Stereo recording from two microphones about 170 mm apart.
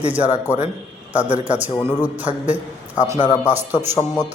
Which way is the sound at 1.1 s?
10° right (ahead or behind).